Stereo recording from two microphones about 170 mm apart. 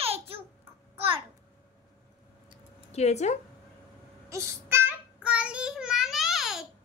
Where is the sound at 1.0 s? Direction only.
30° right (ahead or behind).